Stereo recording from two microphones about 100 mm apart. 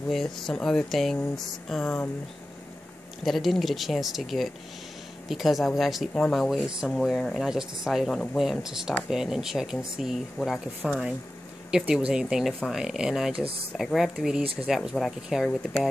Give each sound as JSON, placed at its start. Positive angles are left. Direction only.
{"t": 0.1, "sound": "speech", "side_deg": 5}
{"t": 1.3, "sound": "a sound", "side_deg": 5}
{"t": 3.3, "sound": "speech", "side_deg": 0}
{"t": 14.4, "sound": "speech", "side_deg": -70}
{"t": 14.7, "sound": "speech", "side_deg": 0}